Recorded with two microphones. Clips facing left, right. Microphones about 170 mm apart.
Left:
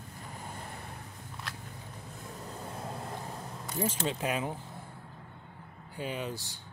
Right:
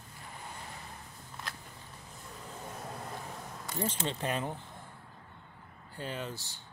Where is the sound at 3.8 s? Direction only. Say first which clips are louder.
Left 3 dB; 5° left (ahead or behind).